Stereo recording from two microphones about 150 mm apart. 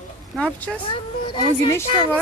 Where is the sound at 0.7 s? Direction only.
5° left (ahead or behind).